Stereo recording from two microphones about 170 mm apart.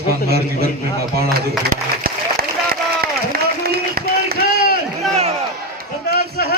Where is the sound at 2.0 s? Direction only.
60° right (ahead or behind).